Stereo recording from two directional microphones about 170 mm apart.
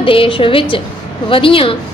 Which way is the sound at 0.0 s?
30° left (ahead or behind).